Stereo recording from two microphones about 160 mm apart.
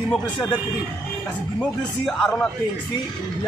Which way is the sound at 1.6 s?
5° left (ahead or behind).